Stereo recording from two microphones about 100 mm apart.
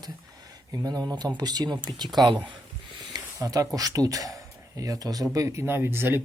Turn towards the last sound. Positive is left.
turn(degrees=-20)  # may be behind; listen again after turning